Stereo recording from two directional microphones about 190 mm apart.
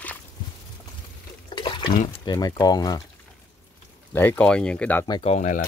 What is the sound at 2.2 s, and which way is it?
Speech, 20° left (ahead or behind).